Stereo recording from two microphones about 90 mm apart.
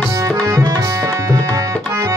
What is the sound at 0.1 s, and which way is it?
Tabla, 35° right (ahead or behind).